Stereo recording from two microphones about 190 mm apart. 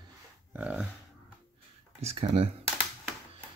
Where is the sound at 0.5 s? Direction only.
5° right (ahead or behind).